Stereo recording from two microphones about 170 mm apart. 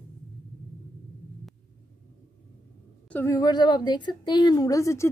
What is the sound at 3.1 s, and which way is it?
A woman's voice, 15° left (ahead or behind).